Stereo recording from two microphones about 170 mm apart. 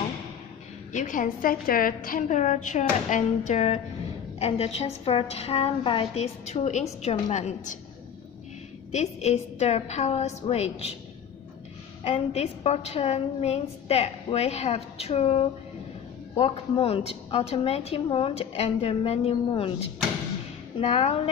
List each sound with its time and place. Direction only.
0.9 s a woman's voice: 50° left (ahead or behind)
8.9 s a woman's voice: 40° left (ahead or behind)
12.0 s a woman's voice: 35° left (ahead or behind)
20.8 s a woman's voice: 35° left (ahead or behind)